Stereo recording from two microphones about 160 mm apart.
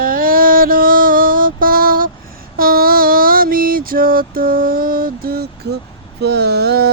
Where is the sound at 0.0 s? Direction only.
65° right (ahead or behind).